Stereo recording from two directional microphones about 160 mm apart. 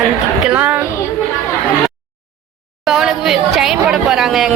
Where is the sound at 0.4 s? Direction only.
10° right (ahead or behind).